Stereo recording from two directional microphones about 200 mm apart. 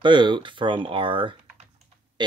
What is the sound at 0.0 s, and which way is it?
Speech, 25° right (ahead or behind).